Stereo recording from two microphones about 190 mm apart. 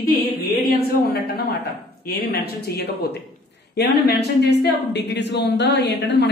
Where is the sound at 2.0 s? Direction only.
55° left (ahead or behind).